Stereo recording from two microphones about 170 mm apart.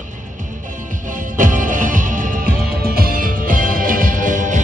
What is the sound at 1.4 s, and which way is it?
Music, 50° right (ahead or behind).